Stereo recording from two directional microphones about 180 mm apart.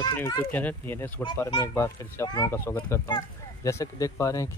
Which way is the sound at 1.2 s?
25° left (ahead or behind).